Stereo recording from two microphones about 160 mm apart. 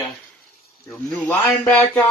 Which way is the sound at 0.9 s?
5° left (ahead or behind).